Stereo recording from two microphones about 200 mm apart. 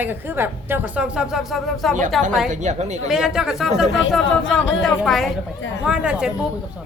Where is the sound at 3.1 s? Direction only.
5° right (ahead or behind).